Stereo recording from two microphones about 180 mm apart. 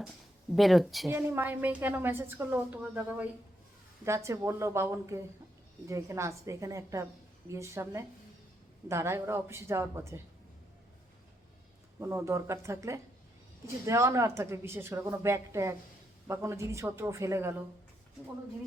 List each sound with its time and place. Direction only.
0.5 s speech: centre (ahead or behind)
1.1 s a woman's voice: 10° right (ahead or behind)
11.9 s a woman's voice: 15° right (ahead or behind)